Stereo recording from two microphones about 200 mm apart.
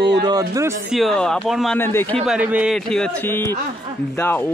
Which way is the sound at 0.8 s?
Centre (ahead or behind).